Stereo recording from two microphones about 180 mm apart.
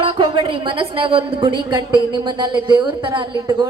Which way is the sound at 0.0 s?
30° right (ahead or behind).